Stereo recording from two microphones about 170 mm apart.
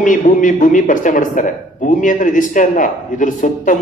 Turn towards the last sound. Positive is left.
turn(degrees=50)  # may be behind; listen again after turning